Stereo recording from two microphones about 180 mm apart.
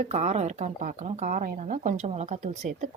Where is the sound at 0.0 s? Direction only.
40° right (ahead or behind).